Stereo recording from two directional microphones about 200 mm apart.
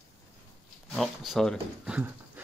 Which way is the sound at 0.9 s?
Centre (ahead or behind).